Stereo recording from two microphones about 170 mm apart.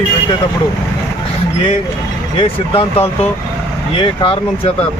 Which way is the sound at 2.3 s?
35° left (ahead or behind).